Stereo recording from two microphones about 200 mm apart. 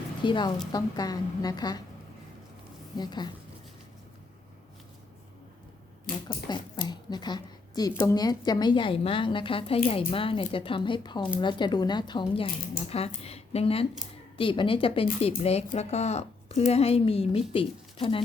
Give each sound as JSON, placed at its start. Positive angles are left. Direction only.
{"t": 0.2, "sound": "a woman's voice", "side_deg": 25}
{"t": 3.0, "sound": "a woman's voice", "side_deg": 20}
{"t": 6.2, "sound": "a woman's voice", "side_deg": 20}